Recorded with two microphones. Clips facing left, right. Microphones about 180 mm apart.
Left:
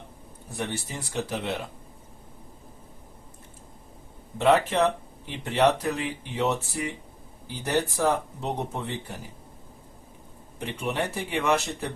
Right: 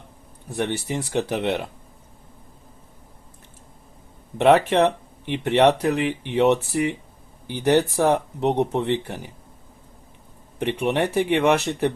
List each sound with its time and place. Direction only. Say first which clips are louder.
0.5 s speech: right 7 dB; 65° right (ahead or behind)
4.4 s speech: right 5 dB; 65° right (ahead or behind)
10.6 s speech: right 7 dB; 70° right (ahead or behind)